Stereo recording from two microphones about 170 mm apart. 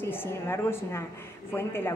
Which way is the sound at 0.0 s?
15° left (ahead or behind).